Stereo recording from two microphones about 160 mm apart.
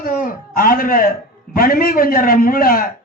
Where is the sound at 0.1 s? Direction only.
65° left (ahead or behind).